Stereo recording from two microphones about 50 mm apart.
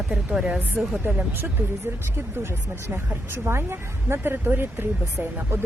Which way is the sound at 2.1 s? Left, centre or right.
Right.